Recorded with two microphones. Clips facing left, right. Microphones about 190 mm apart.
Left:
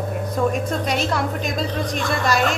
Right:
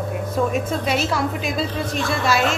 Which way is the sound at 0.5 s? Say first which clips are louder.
Right 1 dB; 5° right (ahead or behind).